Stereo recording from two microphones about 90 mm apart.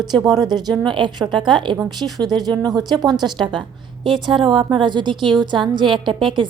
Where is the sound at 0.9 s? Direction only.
60° right (ahead or behind).